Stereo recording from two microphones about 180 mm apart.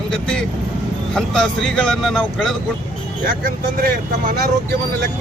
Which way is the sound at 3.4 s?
55° right (ahead or behind).